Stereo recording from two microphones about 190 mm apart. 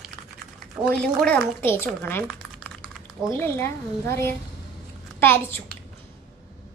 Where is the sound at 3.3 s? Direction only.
15° left (ahead or behind).